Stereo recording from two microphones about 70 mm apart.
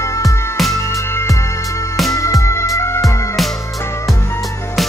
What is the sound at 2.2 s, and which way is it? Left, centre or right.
Music, left.